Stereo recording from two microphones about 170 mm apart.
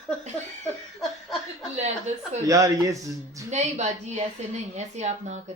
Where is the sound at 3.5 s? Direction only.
40° right (ahead or behind).